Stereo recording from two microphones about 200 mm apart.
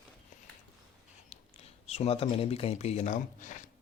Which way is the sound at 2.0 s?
30° left (ahead or behind).